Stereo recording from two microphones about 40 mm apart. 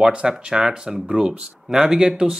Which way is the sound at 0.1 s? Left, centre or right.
Right.